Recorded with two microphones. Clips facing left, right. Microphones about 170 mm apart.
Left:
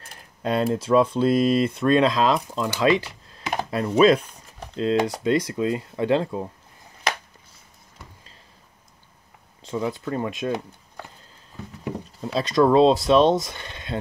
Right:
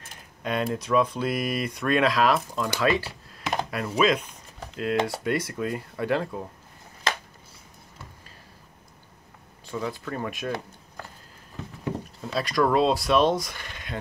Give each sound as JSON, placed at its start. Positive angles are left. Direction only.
{"t": 0.0, "sound": "speech", "side_deg": 35}
{"t": 9.7, "sound": "speech", "side_deg": 20}
{"t": 12.4, "sound": "speech", "side_deg": 25}